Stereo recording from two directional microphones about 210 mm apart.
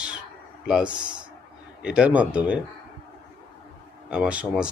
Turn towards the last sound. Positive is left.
turn(degrees=-5)  # may be behind; listen again after turning